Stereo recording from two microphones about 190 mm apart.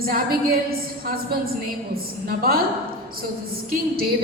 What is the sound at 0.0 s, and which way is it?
Speech, 50° right (ahead or behind).